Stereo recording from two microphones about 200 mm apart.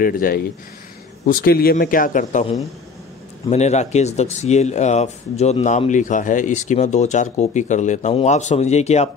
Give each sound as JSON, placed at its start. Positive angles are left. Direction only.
{"t": 0.0, "sound": "speech", "side_deg": 45}
{"t": 3.4, "sound": "speech", "side_deg": 35}